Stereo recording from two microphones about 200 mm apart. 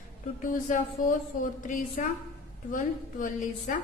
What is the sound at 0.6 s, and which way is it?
A woman's voice, 40° left (ahead or behind).